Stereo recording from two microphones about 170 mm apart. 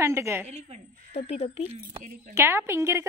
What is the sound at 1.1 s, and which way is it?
Speech, 35° left (ahead or behind).